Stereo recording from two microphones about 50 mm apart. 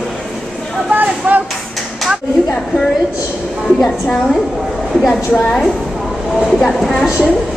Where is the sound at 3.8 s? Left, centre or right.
Centre.